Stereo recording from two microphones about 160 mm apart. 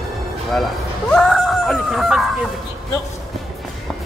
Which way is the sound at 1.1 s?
Centre (ahead or behind).